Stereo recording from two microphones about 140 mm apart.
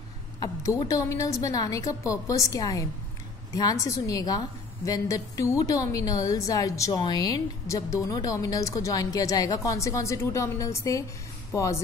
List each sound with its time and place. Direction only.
0.4 s a woman's voice: 25° left (ahead or behind)